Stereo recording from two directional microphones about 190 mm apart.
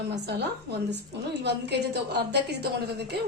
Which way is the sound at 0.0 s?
60° right (ahead or behind).